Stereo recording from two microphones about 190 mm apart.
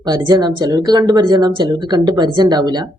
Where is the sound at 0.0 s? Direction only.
20° right (ahead or behind).